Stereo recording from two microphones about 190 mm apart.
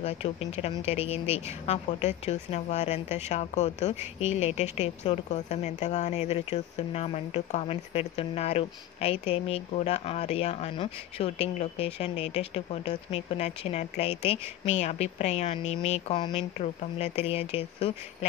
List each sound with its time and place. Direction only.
0.0 s a woman's voice: 35° left (ahead or behind)